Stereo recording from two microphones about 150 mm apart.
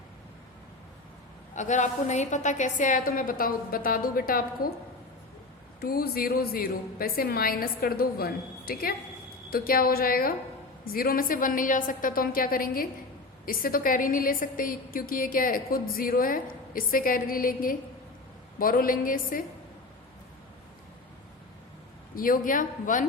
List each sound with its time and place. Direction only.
1.5 s a woman's voice: 55° left (ahead or behind); by 4.7 s 70° left (ahead or behind)
5.8 s a woman's voice: 90° left; by 19.4 s 70° left (ahead or behind)
22.1 s a woman's voice: 70° left (ahead or behind)